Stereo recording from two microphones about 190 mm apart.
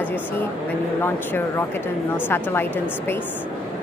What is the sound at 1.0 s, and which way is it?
Speech, 10° left (ahead or behind).